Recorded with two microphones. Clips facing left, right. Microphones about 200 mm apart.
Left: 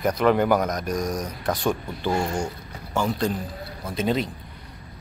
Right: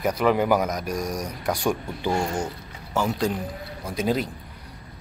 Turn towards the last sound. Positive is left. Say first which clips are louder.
# even
turn(degrees=-5)  # may be behind; listen again after turning